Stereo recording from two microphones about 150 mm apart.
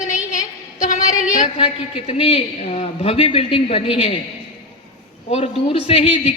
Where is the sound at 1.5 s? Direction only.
40° left (ahead or behind).